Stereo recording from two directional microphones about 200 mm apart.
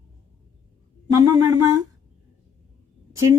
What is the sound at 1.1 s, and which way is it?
Speech, 15° right (ahead or behind).